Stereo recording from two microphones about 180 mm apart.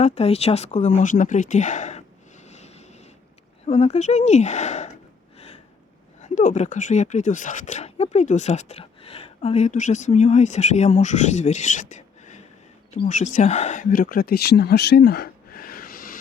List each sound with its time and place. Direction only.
0.0 s speech: 35° left (ahead or behind)
2.5 s vehicle: 35° left (ahead or behind)
3.7 s speech: 35° left (ahead or behind)
6.2 s speech: 45° left (ahead or behind)